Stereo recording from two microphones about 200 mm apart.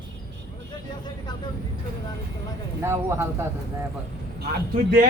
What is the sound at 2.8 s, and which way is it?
Speech, 10° right (ahead or behind).